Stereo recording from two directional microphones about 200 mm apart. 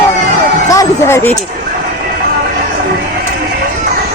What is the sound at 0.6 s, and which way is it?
Speech, 15° left (ahead or behind).